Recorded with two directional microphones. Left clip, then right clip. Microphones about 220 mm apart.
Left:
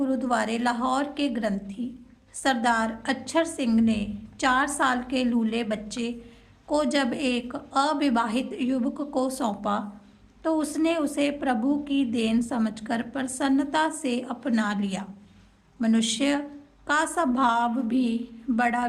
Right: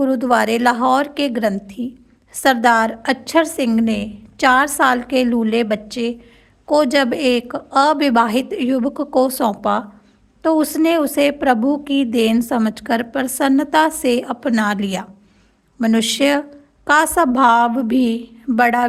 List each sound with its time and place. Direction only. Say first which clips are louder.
0.0 s a woman's voice: right 10 dB; 35° right (ahead or behind)